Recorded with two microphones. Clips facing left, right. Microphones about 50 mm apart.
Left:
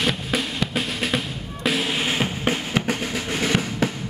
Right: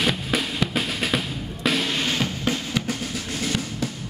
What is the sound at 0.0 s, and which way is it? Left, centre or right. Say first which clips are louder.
Drum: even; centre.